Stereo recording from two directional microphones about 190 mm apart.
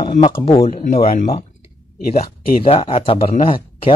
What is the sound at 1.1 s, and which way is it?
Speech, 45° left (ahead or behind).